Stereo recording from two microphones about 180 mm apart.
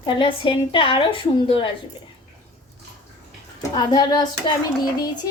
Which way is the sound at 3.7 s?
25° left (ahead or behind).